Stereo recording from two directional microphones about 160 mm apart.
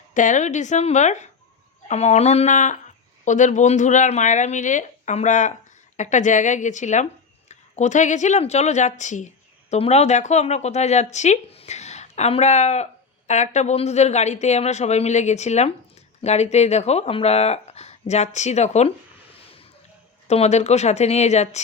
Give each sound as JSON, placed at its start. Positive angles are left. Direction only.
{"t": 0.1, "sound": "speech", "side_deg": 50}
{"t": 20.2, "sound": "speech", "side_deg": 40}